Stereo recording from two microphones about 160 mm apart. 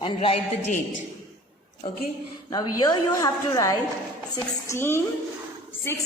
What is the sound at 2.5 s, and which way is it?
A woman's voice, 25° left (ahead or behind).